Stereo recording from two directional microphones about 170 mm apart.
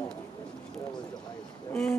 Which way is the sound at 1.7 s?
5° left (ahead or behind).